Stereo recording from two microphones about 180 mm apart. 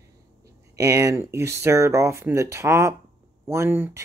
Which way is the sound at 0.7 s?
15° right (ahead or behind).